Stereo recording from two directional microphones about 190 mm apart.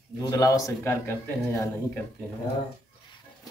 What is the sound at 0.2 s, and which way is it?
A man's voice, 20° left (ahead or behind).